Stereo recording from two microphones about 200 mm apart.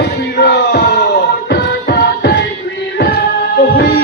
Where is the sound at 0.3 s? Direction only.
55° left (ahead or behind).